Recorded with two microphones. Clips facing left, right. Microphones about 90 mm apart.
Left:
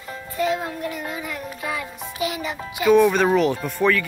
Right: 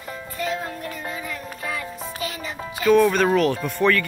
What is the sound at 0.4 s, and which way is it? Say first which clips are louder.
Music: left 5 dB; 20° left (ahead or behind).